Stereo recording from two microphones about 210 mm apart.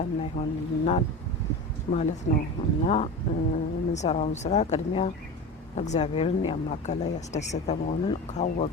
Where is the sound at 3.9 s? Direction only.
30° left (ahead or behind).